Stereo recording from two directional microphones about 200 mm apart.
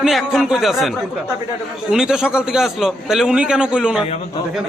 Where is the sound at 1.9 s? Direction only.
5° right (ahead or behind).